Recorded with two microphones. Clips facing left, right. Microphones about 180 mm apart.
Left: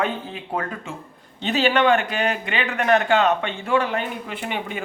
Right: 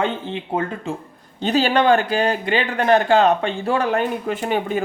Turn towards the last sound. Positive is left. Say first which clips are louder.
# right 7 dB
turn(degrees=-40)  # may be behind; listen again after turning